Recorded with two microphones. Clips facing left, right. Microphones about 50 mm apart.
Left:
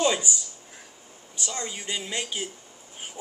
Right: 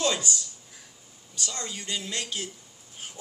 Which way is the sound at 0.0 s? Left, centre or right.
Centre.